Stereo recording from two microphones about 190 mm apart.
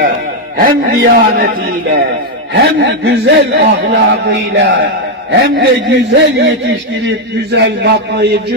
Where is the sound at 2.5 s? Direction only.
65° right (ahead or behind).